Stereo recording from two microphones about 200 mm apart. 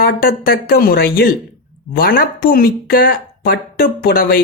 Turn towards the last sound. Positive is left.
turn(degrees=45)  # may be behind; listen again after turning